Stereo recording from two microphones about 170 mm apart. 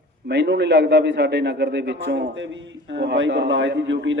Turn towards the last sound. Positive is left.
turn(degrees=-90)